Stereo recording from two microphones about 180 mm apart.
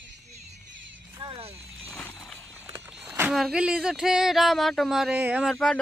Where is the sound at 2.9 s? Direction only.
Centre (ahead or behind).